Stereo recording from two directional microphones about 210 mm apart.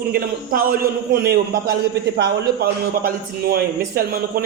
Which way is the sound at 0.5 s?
45° right (ahead or behind).